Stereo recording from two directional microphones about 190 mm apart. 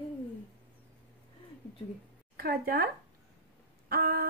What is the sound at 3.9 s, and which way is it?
Speech, 50° right (ahead or behind).